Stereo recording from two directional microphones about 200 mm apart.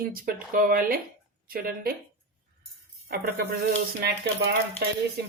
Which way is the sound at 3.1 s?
50° right (ahead or behind).